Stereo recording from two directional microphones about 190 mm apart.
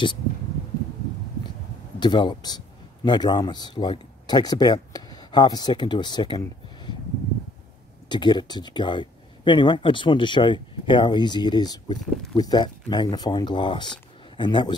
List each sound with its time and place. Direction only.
2.0 s speech: 25° left (ahead or behind)
8.1 s speech: 25° left (ahead or behind)